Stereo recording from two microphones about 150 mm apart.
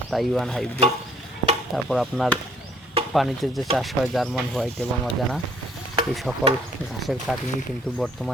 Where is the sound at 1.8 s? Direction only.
Centre (ahead or behind).